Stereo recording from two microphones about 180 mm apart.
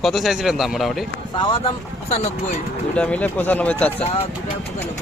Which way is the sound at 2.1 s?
35° left (ahead or behind).